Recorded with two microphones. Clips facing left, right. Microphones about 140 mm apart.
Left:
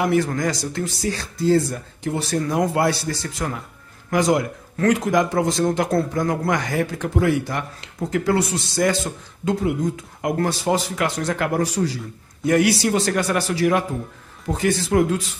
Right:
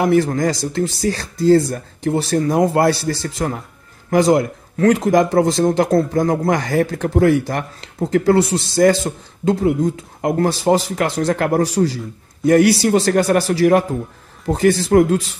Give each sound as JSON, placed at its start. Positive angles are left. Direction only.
{"t": 0.2, "sound": "speech", "side_deg": -30}